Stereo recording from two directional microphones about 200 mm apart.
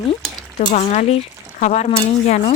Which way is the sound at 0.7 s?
35° left (ahead or behind).